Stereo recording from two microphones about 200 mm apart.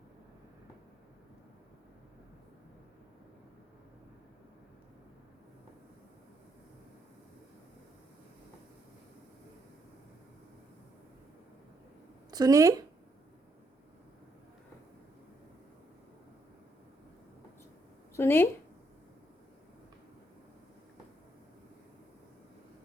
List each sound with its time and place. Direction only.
12.3 s speech: 20° right (ahead or behind)
18.2 s speech: 10° left (ahead or behind)